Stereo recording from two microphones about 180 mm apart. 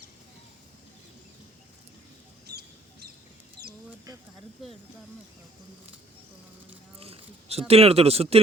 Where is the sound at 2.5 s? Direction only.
65° right (ahead or behind).